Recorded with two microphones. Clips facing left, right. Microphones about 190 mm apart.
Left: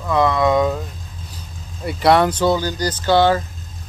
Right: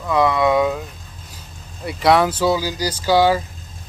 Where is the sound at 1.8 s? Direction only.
Centre (ahead or behind).